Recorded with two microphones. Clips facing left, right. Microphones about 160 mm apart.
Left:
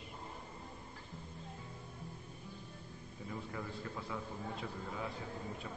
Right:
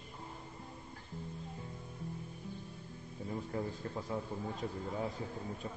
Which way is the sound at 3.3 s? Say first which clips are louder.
Right 5 dB; 35° right (ahead or behind).